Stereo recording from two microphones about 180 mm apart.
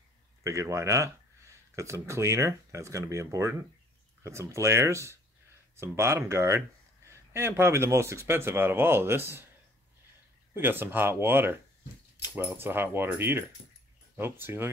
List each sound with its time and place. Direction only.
0.4 s speech: 15° right (ahead or behind)
10.5 s speech: 10° right (ahead or behind)